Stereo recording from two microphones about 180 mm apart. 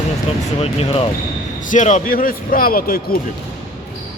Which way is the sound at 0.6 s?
35° left (ahead or behind).